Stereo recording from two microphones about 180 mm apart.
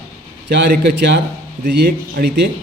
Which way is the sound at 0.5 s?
70° right (ahead or behind).